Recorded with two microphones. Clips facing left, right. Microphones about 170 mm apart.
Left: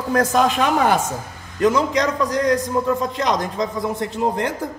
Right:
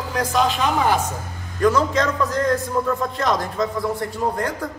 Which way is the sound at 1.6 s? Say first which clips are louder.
Left 1 dB; 20° left (ahead or behind).